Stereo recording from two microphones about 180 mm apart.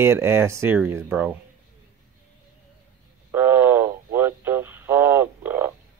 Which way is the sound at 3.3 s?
10° right (ahead or behind).